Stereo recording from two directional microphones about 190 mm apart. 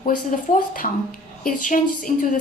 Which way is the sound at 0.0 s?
45° left (ahead or behind).